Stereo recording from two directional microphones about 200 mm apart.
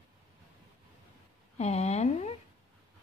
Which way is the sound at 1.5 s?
35° left (ahead or behind).